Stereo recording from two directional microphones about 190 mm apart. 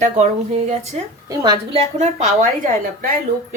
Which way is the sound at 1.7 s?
35° right (ahead or behind).